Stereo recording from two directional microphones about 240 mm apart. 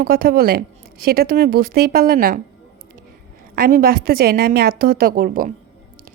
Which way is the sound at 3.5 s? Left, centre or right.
Right.